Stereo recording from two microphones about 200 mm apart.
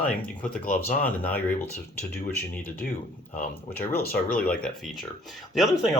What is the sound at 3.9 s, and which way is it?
Speech, 50° left (ahead or behind).